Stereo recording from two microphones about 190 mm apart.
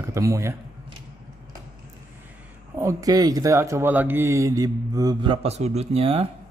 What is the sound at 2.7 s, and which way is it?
Speech, 15° right (ahead or behind).